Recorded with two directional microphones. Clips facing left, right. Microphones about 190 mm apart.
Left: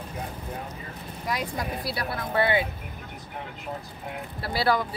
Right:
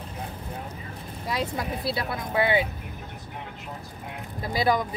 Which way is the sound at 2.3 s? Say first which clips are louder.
Right 1 dB; 10° right (ahead or behind).